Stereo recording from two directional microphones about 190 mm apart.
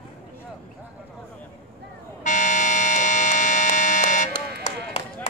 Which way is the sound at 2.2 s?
40° left (ahead or behind).